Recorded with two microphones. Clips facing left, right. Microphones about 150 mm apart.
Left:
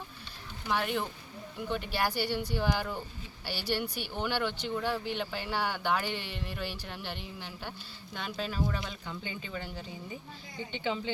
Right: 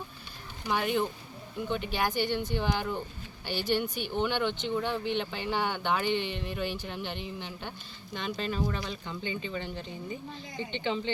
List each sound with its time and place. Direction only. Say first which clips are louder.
0.7 s speech: right 3 dB; centre (ahead or behind)